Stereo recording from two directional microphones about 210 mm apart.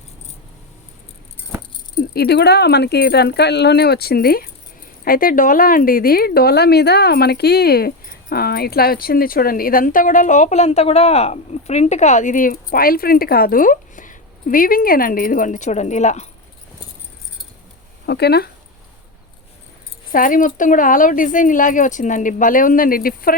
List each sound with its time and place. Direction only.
2.0 s speech: 50° left (ahead or behind); by 16.3 s 30° left (ahead or behind)
18.0 s speech: 50° left (ahead or behind)
20.1 s speech: 40° left (ahead or behind)